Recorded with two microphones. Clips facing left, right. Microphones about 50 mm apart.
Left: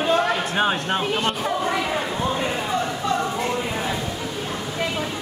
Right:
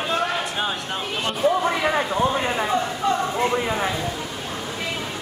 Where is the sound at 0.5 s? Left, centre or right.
Left.